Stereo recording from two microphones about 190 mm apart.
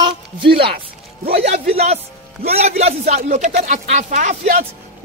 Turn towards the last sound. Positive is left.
turn(degrees=-40)  # may be behind; listen again after turning